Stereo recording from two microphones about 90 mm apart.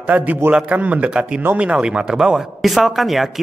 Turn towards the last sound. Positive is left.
turn(degrees=0)  # may be behind; listen again after turning